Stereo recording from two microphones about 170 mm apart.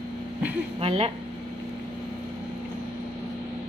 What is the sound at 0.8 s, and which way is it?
Speech, 35° right (ahead or behind).